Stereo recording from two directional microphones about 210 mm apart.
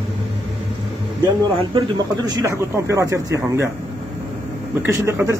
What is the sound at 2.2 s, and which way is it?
A man's voice, 15° right (ahead or behind).